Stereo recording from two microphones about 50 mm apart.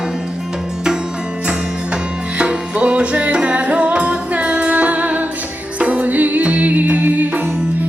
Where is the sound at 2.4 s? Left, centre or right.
Right.